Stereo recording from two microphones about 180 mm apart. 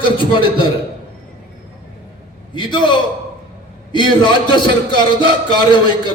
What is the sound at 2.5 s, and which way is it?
A man's voice, 25° left (ahead or behind).